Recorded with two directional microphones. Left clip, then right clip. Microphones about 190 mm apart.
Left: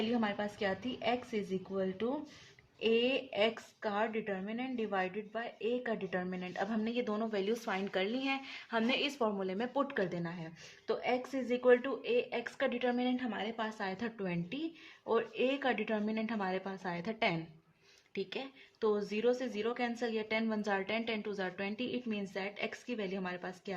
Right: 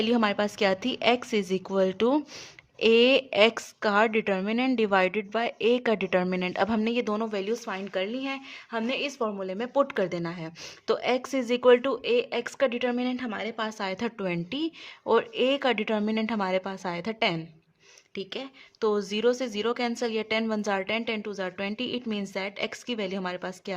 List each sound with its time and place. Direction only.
0.1 s a woman's voice: 55° right (ahead or behind); by 9.6 s 25° right (ahead or behind)
9.7 s a woman's voice: 40° right (ahead or behind)